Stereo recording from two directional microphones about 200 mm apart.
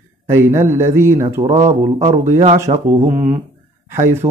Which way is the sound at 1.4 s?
35° right (ahead or behind).